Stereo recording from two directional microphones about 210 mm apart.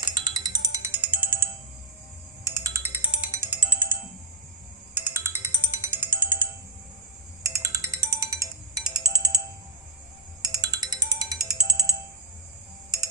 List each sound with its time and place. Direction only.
0.0 s music: 20° right (ahead or behind)
4.9 s music: 10° right (ahead or behind)
10.4 s music: 20° right (ahead or behind)